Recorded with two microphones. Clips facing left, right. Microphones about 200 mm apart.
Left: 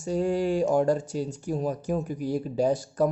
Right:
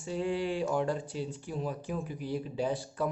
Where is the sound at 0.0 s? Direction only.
45° left (ahead or behind).